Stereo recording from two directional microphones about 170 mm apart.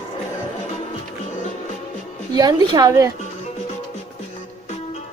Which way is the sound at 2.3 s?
25° right (ahead or behind).